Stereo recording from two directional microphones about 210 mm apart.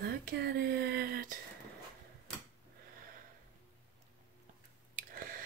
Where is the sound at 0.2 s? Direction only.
50° right (ahead or behind).